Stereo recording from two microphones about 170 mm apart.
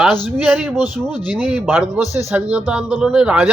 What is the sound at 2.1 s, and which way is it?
Speech, 15° right (ahead or behind).